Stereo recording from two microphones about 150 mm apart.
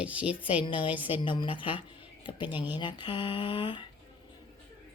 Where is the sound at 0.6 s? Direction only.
35° left (ahead or behind).